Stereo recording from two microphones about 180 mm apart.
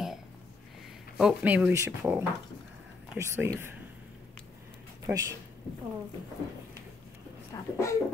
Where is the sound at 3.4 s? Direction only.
10° right (ahead or behind).